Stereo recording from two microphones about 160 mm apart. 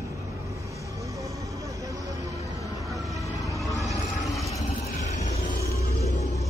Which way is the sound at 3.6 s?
Centre (ahead or behind).